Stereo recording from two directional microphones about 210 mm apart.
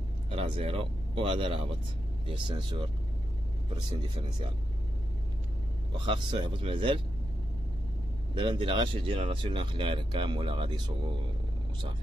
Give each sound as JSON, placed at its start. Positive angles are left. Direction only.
{"t": 0.3, "sound": "speech", "side_deg": -30}
{"t": 5.9, "sound": "speech", "side_deg": -25}
{"t": 8.4, "sound": "speech", "side_deg": -25}